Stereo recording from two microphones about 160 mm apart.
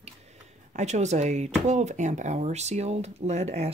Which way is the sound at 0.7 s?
45° right (ahead or behind).